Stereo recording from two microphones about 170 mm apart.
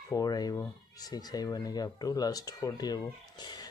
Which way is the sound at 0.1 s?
20° left (ahead or behind).